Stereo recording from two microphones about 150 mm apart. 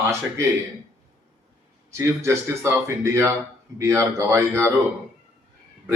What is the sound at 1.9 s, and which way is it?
A man's voice, 20° right (ahead or behind).